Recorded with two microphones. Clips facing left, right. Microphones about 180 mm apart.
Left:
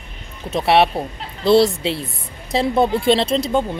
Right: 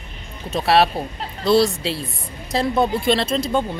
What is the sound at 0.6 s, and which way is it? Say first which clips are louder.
Speech: left 1 dB; 25° left (ahead or behind).